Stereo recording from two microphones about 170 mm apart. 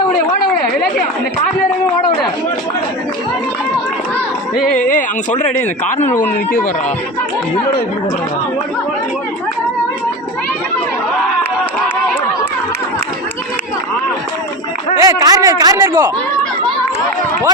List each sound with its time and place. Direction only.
4.8 s speech: 50° left (ahead or behind)
15.0 s speech: 20° right (ahead or behind)